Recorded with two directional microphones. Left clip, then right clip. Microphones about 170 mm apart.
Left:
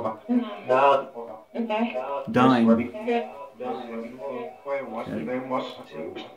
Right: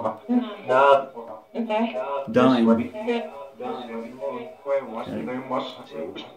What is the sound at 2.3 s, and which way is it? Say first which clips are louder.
Speech: right 1 dB; 20° left (ahead or behind).